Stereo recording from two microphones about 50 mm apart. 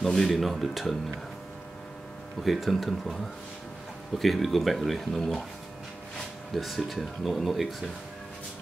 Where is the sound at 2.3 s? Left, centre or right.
Centre.